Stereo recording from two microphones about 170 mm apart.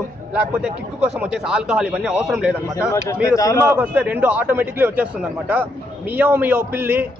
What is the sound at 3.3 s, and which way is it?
Speech, 20° left (ahead or behind).